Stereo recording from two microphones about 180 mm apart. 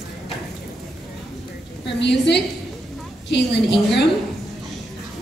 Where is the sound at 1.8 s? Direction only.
75° left (ahead or behind).